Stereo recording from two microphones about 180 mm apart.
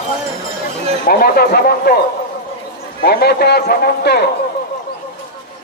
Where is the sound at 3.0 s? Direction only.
60° left (ahead or behind).